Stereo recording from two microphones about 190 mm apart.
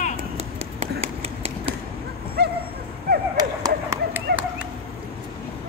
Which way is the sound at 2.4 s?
60° right (ahead or behind).